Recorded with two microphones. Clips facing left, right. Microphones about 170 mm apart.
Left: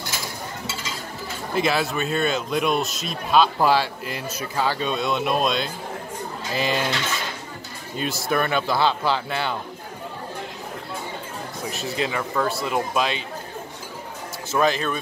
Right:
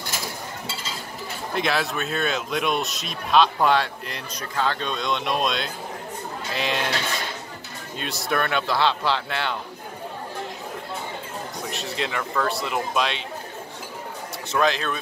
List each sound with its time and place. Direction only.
1.5 s speech: centre (ahead or behind)
8.0 s speech: centre (ahead or behind)
11.6 s speech: centre (ahead or behind)
14.5 s speech: centre (ahead or behind)